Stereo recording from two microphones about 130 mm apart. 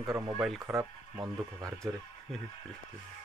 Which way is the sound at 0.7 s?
25° right (ahead or behind).